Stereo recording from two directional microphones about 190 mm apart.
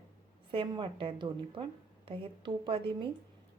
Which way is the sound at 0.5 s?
25° right (ahead or behind).